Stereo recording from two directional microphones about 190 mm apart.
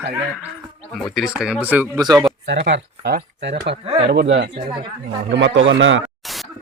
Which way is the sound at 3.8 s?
30° right (ahead or behind).